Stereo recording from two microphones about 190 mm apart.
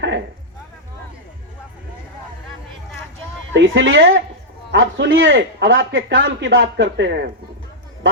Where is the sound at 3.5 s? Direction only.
70° right (ahead or behind).